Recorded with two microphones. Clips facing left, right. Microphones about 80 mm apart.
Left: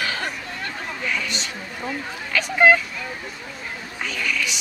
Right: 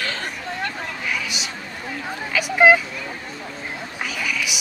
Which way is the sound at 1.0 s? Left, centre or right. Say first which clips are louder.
Left 1 dB; centre.